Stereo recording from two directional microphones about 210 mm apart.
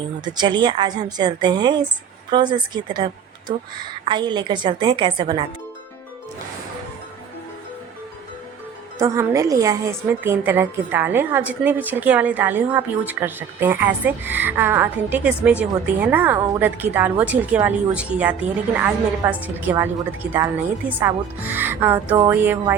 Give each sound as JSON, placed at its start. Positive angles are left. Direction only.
{"t": 0.3, "sound": "a woman's voice", "side_deg": -20}
{"t": 9.0, "sound": "a woman's voice", "side_deg": -15}